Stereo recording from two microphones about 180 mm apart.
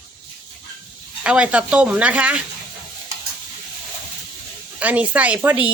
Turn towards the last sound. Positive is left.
turn(degrees=-10)  # may be behind; listen again after turning